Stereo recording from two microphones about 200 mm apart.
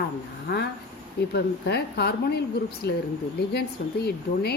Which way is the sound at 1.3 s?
55° left (ahead or behind).